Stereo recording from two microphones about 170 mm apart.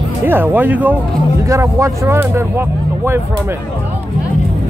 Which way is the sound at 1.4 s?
20° right (ahead or behind).